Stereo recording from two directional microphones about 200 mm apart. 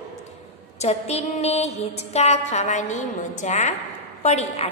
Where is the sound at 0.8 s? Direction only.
30° left (ahead or behind).